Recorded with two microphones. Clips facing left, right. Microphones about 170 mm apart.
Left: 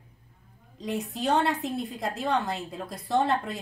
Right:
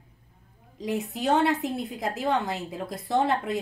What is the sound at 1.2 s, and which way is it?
Speech, centre (ahead or behind).